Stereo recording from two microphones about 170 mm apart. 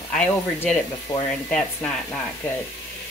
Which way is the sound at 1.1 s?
30° left (ahead or behind).